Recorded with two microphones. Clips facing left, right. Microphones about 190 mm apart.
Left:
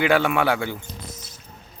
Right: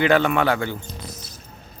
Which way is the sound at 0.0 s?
10° left (ahead or behind).